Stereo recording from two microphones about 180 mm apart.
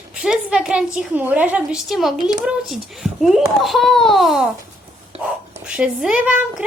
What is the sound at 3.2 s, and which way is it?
A child's voice, centre (ahead or behind).